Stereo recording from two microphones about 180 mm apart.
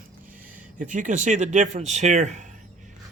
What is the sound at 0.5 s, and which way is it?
Speech, 45° right (ahead or behind).